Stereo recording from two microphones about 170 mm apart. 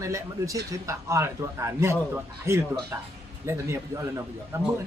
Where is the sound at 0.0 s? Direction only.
20° right (ahead or behind).